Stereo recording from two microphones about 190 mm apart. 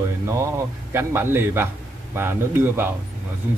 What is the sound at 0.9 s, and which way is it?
Speech, 10° right (ahead or behind).